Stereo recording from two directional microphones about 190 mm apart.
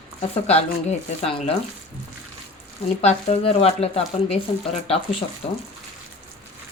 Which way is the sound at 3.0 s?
35° left (ahead or behind).